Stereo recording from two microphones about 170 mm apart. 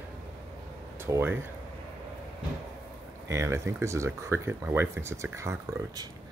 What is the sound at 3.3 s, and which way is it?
Speech, 15° right (ahead or behind).